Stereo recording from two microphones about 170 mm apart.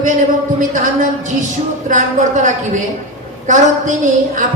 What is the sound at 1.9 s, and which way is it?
A man's voice, 50° right (ahead or behind).